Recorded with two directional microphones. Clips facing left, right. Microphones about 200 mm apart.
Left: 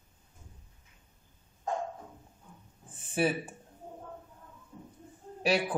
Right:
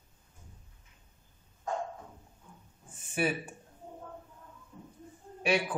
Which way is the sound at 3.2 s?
30° left (ahead or behind).